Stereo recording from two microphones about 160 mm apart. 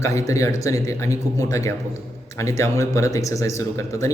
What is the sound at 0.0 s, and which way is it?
Speech, 20° left (ahead or behind).